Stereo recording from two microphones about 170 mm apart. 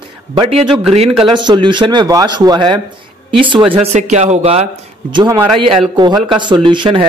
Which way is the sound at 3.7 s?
40° right (ahead or behind).